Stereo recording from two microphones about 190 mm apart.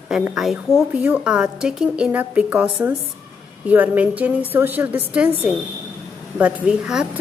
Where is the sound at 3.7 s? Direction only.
10° right (ahead or behind).